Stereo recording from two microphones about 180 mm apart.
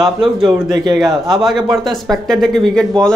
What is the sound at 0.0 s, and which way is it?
Speech, centre (ahead or behind).